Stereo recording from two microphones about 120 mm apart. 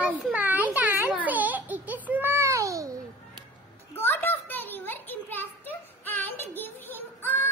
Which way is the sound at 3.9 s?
20° left (ahead or behind).